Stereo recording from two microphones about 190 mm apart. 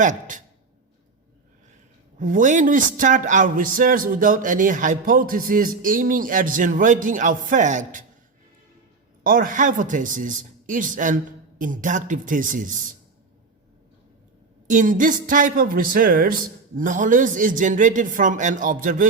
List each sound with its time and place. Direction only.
0.0 s speech: 40° right (ahead or behind)
2.1 s a man's voice: 45° right (ahead or behind)
9.2 s a man's voice: 50° right (ahead or behind)
14.7 s a man's voice: 45° right (ahead or behind)